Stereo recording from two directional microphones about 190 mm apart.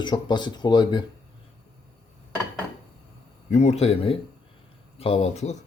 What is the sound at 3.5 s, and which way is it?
A man's voice, 35° left (ahead or behind).